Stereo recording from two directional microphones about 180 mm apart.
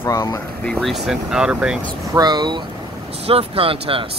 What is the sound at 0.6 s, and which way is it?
Speech, centre (ahead or behind).